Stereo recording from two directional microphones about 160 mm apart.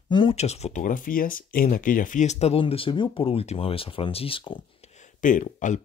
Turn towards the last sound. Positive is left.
turn(degrees=55)  # may be behind; listen again after turning